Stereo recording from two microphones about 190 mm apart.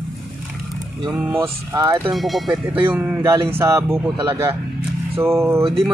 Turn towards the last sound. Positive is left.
turn(degrees=-15)  # may be behind; listen again after turning